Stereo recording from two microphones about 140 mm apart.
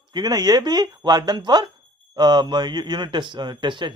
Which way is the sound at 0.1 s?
30° right (ahead or behind).